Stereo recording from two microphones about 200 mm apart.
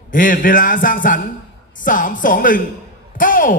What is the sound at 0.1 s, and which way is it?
A man's voice, 40° left (ahead or behind).